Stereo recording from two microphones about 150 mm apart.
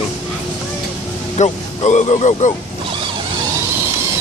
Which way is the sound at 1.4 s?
50° left (ahead or behind).